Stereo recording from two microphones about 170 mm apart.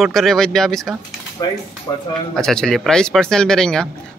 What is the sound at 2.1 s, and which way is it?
Speech, centre (ahead or behind).